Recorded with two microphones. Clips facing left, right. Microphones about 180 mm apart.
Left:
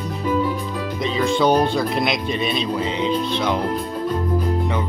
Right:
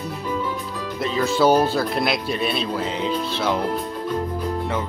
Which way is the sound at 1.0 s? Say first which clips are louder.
Even; 5° right (ahead or behind).